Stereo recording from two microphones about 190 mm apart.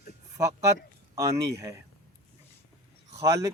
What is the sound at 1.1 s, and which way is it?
Speech, 15° right (ahead or behind).